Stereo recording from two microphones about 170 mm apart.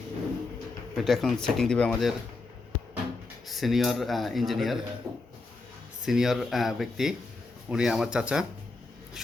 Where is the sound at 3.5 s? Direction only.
Centre (ahead or behind).